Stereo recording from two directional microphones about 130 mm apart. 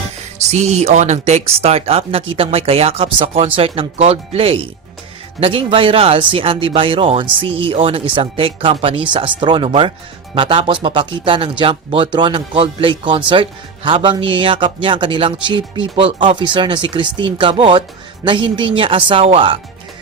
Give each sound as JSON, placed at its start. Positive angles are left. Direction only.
{"t": 0.5, "sound": "a man's voice", "side_deg": -60}